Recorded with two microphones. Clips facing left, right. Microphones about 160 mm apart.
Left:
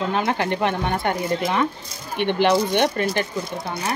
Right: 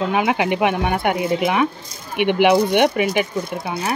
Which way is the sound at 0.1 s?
10° right (ahead or behind).